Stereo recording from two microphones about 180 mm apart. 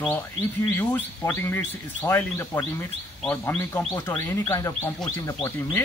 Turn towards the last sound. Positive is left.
turn(degrees=15)  # may be behind; listen again after turning